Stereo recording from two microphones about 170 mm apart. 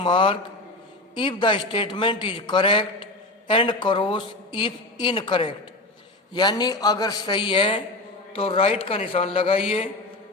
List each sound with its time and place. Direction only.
0.0 s a man's voice: 30° left (ahead or behind)